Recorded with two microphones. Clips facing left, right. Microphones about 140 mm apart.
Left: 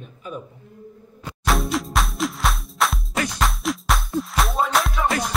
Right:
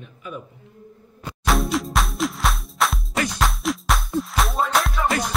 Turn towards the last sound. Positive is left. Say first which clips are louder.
# even
turn(degrees=0)  # may be behind; listen again after turning